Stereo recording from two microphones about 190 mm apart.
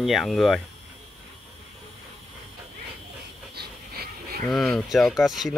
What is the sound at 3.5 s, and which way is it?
Dog, 55° right (ahead or behind).